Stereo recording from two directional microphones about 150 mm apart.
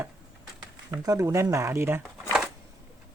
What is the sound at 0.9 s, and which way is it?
Speech, 20° right (ahead or behind).